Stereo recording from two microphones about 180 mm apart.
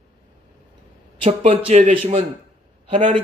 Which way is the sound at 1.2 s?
30° right (ahead or behind).